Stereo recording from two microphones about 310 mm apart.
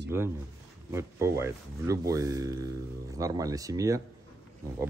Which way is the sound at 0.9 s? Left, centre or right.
Centre.